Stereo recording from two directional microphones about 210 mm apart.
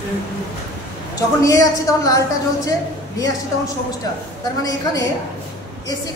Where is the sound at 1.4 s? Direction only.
15° left (ahead or behind).